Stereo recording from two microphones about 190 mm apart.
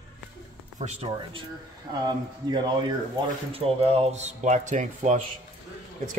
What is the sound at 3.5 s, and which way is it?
Speech, 30° right (ahead or behind).